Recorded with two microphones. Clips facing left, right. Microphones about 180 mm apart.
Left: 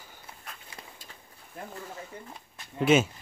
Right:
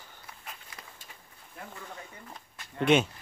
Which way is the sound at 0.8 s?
25° left (ahead or behind).